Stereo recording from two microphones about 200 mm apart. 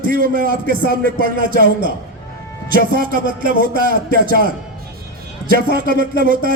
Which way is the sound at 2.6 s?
45° right (ahead or behind).